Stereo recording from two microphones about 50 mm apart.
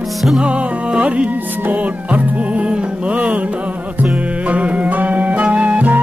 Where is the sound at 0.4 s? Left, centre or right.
Right.